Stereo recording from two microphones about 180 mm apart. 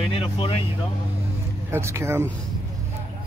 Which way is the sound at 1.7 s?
15° right (ahead or behind).